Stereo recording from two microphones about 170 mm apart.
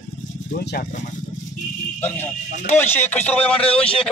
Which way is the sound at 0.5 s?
65° left (ahead or behind).